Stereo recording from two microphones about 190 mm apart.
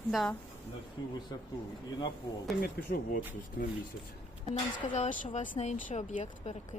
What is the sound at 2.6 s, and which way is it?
Speech, 50° left (ahead or behind).